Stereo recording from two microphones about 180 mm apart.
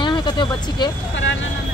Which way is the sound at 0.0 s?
25° left (ahead or behind).